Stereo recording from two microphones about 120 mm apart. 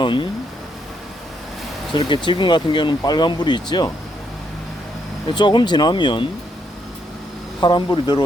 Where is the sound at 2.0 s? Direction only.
40° left (ahead or behind).